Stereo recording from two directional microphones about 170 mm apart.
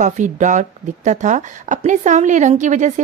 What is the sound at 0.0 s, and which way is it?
Speech, 45° right (ahead or behind).